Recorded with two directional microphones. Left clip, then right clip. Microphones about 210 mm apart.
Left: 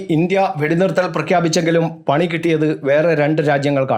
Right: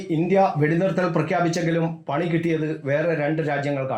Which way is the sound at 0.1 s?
35° left (ahead or behind).